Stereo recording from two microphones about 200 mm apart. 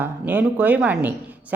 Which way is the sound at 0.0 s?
10° right (ahead or behind).